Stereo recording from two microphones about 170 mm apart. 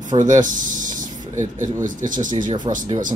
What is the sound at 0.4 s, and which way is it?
Speech, 50° right (ahead or behind).